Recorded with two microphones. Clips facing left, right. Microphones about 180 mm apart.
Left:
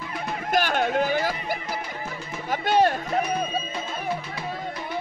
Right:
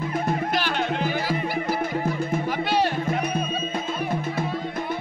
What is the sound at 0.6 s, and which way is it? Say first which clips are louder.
Music: left 3 dB; 50° left (ahead or behind).